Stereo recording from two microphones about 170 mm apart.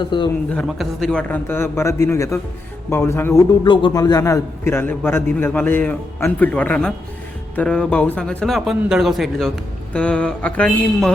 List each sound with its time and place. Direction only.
0.0 s a man's voice: 25° left (ahead or behind)
0.5 s a man's voice: centre (ahead or behind)
3.6 s a man's voice: 30° left (ahead or behind); by 11.1 s 5° left (ahead or behind)